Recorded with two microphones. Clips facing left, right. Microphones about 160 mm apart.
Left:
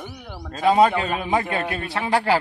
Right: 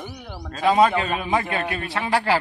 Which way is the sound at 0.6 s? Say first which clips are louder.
Left 1 dB; 30° left (ahead or behind).